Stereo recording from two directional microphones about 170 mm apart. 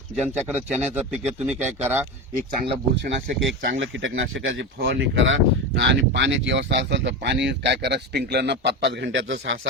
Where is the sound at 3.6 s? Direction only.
90° right.